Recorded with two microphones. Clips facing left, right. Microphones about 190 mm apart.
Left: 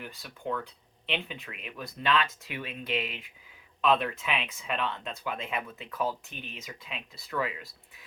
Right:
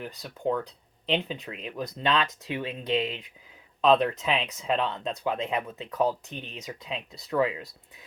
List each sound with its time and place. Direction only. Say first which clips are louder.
0.0 s speech: right 7 dB; 30° right (ahead or behind)